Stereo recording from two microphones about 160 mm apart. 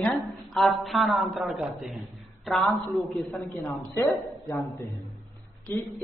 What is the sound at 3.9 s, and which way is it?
Speech, 15° left (ahead or behind).